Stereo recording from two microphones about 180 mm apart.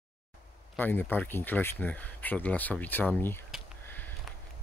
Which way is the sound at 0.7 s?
10° left (ahead or behind).